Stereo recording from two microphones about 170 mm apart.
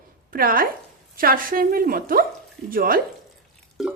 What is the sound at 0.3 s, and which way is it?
A woman's voice, 55° right (ahead or behind).